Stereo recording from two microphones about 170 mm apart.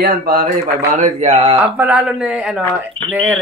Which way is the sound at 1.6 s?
10° right (ahead or behind).